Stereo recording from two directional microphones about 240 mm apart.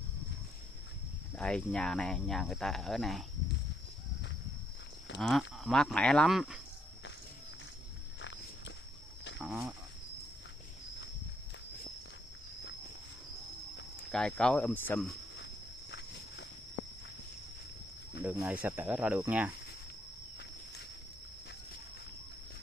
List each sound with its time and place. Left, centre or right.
1.3 s cricket: centre
5.2 s cricket: centre
9.4 s speech: centre
14.1 s cricket: centre
18.2 s speech: centre